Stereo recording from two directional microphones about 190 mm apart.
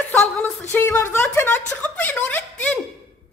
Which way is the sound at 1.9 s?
5° left (ahead or behind).